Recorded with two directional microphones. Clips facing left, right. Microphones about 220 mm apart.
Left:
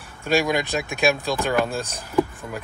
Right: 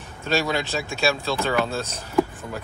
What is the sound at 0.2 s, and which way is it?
Speech, 15° left (ahead or behind).